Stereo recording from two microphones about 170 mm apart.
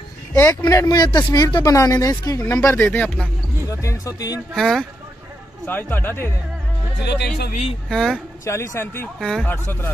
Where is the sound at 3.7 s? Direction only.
20° left (ahead or behind).